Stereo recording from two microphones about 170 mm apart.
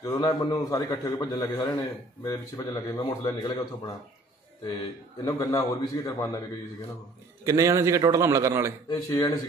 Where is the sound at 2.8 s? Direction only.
25° left (ahead or behind).